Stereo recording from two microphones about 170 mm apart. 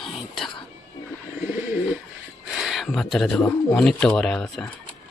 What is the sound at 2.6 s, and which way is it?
Speech, centre (ahead or behind).